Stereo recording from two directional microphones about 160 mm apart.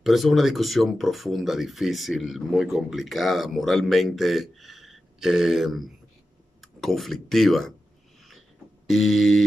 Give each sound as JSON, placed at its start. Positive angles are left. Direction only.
{"t": 0.0, "sound": "speech", "side_deg": 0}
{"t": 8.8, "sound": "speech", "side_deg": 0}